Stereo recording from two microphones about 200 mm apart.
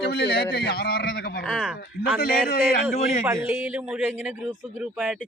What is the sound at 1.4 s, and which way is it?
Speech, centre (ahead or behind).